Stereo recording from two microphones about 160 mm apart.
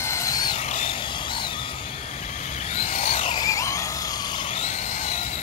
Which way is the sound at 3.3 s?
20° left (ahead or behind).